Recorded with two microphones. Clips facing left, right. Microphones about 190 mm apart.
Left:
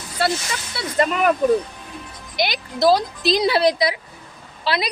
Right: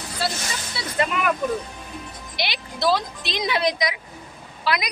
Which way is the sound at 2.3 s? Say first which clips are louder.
Left 7 dB; 45° left (ahead or behind).